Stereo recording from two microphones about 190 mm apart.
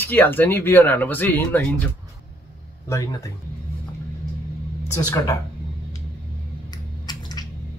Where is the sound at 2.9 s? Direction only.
15° left (ahead or behind).